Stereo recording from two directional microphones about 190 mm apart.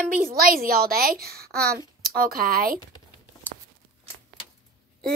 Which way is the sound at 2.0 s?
50° right (ahead or behind).